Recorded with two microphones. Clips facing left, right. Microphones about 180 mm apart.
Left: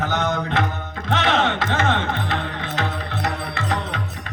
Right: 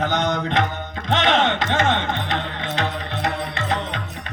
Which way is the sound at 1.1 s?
20° right (ahead or behind).